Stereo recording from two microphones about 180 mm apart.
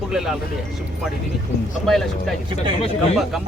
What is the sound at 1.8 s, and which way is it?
Speech, centre (ahead or behind).